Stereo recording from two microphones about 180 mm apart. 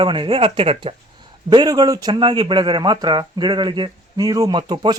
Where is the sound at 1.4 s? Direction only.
20° right (ahead or behind).